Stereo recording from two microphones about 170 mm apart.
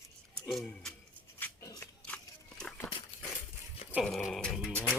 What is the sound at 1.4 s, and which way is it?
Dog, 15° left (ahead or behind).